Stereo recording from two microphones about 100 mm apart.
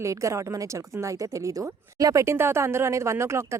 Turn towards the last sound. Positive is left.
turn(degrees=-25)  # may be behind; listen again after turning